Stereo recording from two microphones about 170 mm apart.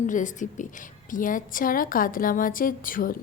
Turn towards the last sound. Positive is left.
turn(degrees=55)  # may be behind; listen again after turning